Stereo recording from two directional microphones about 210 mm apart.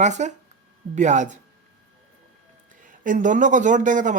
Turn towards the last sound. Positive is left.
turn(degrees=-35)  # may be behind; listen again after turning